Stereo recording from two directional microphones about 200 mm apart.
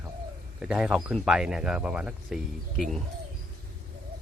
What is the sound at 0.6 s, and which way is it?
Speech, 5° right (ahead or behind).